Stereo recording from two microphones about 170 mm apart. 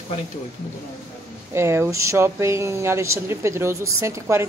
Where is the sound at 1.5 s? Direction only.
15° right (ahead or behind).